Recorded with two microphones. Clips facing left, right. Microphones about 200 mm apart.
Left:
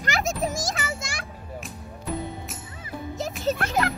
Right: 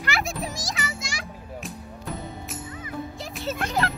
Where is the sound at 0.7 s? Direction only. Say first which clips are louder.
Left 1 dB; 55° left (ahead or behind).